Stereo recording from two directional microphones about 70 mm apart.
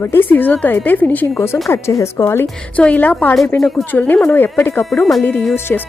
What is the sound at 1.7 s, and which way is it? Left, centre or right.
Speech, left.